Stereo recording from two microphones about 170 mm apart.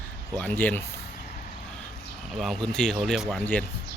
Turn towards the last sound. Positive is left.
turn(degrees=0)  # may be behind; listen again after turning